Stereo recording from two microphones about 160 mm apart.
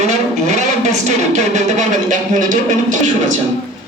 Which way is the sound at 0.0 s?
45° right (ahead or behind).